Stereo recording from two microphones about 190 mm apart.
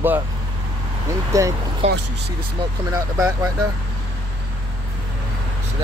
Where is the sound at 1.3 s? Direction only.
15° right (ahead or behind).